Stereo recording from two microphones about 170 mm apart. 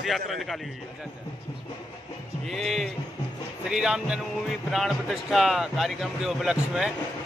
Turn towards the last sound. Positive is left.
turn(degrees=-5)  # may be behind; listen again after turning